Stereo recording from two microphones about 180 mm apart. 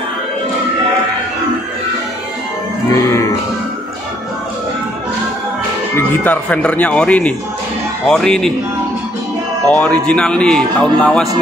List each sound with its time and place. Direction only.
2.9 s music: 15° left (ahead or behind)
5.9 s speech: 10° left (ahead or behind)
9.7 s speech: 5° left (ahead or behind)